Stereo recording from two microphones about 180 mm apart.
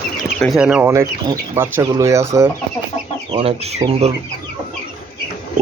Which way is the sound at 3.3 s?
35° right (ahead or behind).